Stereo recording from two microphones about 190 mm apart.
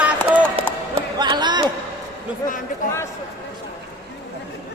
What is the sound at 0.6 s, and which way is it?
Run, 30° right (ahead or behind).